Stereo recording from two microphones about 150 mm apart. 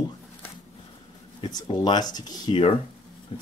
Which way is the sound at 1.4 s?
30° left (ahead or behind).